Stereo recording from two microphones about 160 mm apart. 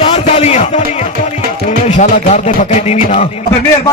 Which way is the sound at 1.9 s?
50° left (ahead or behind).